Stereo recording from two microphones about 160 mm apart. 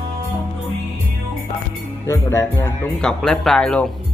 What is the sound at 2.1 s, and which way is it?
Speech, 20° left (ahead or behind).